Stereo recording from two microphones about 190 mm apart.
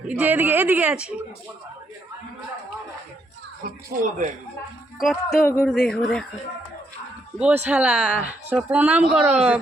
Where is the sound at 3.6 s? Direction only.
45° right (ahead or behind).